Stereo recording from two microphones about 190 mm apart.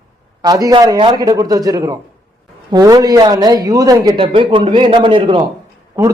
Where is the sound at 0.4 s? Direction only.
20° right (ahead or behind).